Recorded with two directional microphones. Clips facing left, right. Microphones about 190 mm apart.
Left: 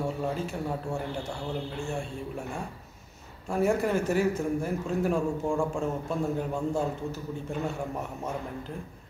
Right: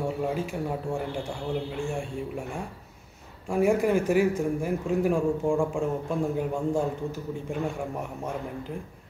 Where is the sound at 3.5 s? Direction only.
15° right (ahead or behind).